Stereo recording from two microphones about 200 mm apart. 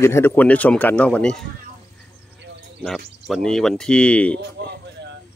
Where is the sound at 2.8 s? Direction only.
Centre (ahead or behind).